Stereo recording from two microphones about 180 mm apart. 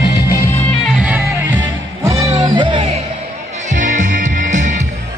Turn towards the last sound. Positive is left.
turn(degrees=-45)  # may be behind; listen again after turning